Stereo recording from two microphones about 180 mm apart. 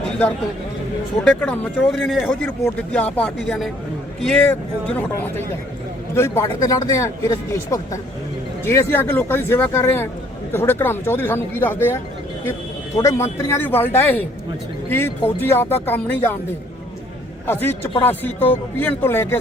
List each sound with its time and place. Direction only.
1.2 s speech: 5° left (ahead or behind)
13.0 s speech: 15° left (ahead or behind)
17.4 s a man's voice: 10° left (ahead or behind)